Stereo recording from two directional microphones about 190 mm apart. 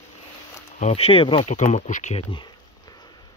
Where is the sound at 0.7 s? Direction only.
35° left (ahead or behind).